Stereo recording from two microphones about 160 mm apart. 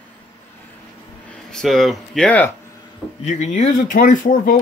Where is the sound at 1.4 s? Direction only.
Centre (ahead or behind).